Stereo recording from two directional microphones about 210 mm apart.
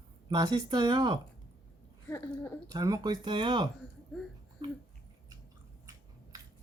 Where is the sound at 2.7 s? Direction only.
15° right (ahead or behind).